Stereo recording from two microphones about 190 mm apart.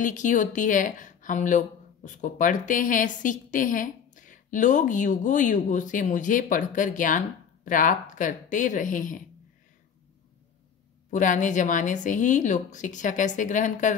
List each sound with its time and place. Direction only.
0.0 s a woman's voice: 40° left (ahead or behind)
11.1 s speech: 40° left (ahead or behind)